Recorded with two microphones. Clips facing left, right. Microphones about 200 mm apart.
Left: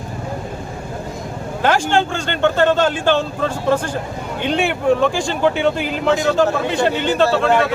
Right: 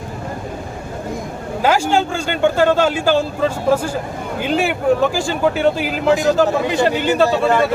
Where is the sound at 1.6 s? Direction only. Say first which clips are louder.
Right 1 dB; 5° right (ahead or behind).